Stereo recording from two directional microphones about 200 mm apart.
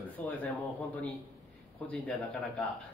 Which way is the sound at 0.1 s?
10° left (ahead or behind).